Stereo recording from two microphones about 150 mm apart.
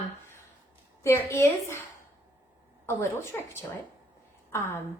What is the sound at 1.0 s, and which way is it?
Speech, 15° left (ahead or behind).